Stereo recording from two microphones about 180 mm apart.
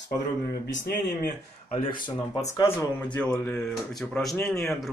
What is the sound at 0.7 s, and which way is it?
Speech, 75° left (ahead or behind).